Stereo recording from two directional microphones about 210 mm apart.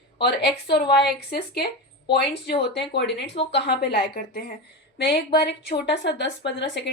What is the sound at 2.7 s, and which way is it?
A woman's voice, 55° left (ahead or behind).